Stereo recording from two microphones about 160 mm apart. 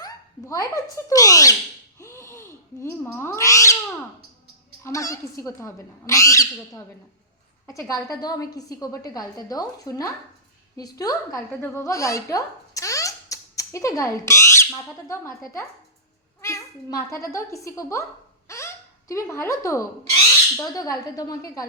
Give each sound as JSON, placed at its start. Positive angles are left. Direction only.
{"t": 0.0, "sound": "speech", "side_deg": 20}
{"t": 2.0, "sound": "a sound", "side_deg": 20}
{"t": 3.0, "sound": "a woman's voice", "side_deg": 15}
{"t": 4.8, "sound": "a woman's voice", "side_deg": 20}
{"t": 7.7, "sound": "a woman's voice", "side_deg": 20}